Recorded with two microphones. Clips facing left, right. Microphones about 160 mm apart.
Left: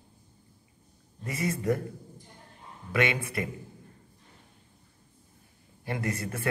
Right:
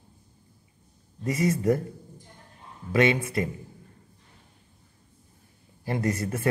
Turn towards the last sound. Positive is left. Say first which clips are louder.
# right 5 dB
turn(degrees=-25)  # may be behind; listen again after turning